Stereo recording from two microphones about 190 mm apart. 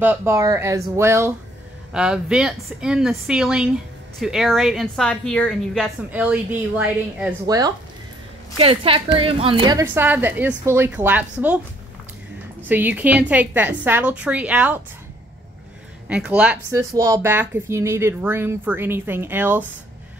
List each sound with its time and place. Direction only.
0.0 s a woman's voice: 10° right (ahead or behind); by 5.9 s 5° left (ahead or behind)
6.1 s speech: 5° right (ahead or behind)
7.4 s a woman's voice: 20° right (ahead or behind)
8.5 s a woman's voice: 30° right (ahead or behind)
9.8 s speech: 10° right (ahead or behind)
12.6 s speech: 10° right (ahead or behind)
16.1 s speech: 5° right (ahead or behind)